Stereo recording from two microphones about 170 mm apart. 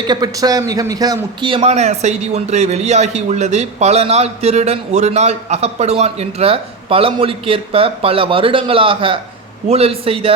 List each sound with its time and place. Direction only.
0.1 s a man's voice: 25° right (ahead or behind)